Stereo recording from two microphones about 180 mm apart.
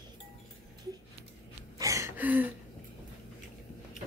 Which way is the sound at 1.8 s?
15° right (ahead or behind).